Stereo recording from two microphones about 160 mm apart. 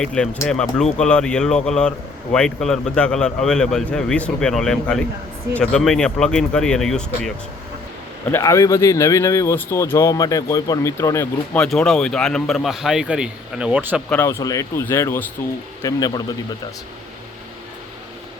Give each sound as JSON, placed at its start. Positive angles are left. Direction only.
{"t": 0.0, "sound": "a man's voice", "side_deg": 5}
{"t": 8.3, "sound": "speech", "side_deg": 15}
{"t": 11.5, "sound": "a man's voice", "side_deg": 5}
{"t": 14.1, "sound": "speech", "side_deg": 15}